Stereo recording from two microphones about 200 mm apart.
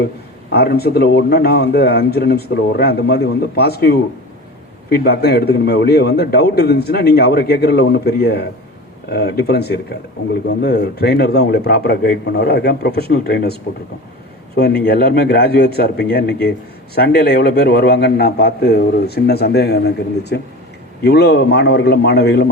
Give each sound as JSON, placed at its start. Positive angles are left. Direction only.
{"t": 0.5, "sound": "a man's voice", "side_deg": 55}
{"t": 14.5, "sound": "a man's voice", "side_deg": 55}